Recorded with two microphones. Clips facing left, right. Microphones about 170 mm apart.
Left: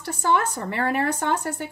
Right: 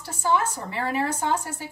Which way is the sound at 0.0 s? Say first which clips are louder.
Left 1 dB; 60° left (ahead or behind).